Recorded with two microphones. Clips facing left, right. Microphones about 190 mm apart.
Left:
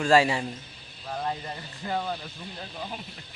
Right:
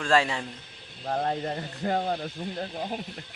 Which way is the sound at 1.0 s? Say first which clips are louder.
Right 4 dB; 60° right (ahead or behind).